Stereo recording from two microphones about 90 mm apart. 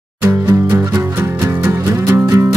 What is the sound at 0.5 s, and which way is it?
Music, 35° right (ahead or behind).